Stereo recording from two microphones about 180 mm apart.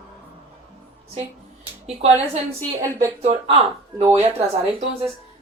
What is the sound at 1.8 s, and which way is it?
Speech, 35° right (ahead or behind).